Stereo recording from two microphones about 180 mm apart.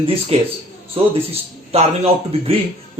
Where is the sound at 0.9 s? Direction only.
30° right (ahead or behind).